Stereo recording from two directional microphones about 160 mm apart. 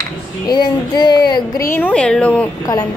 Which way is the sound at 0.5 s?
25° left (ahead or behind).